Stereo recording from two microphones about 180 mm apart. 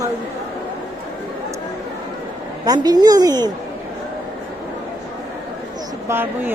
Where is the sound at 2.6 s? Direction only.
20° right (ahead or behind).